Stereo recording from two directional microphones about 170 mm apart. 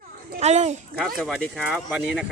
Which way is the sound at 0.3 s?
40° right (ahead or behind).